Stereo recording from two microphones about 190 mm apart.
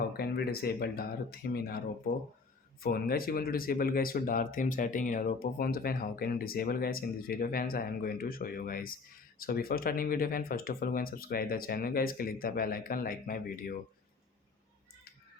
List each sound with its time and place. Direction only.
0.1 s speech: 55° left (ahead or behind)
2.8 s speech: 50° left (ahead or behind)